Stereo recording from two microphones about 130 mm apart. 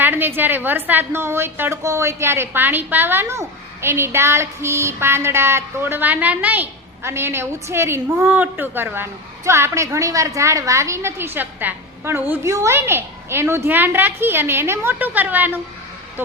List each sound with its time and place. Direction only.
0.0 s a woman's voice: 15° right (ahead or behind)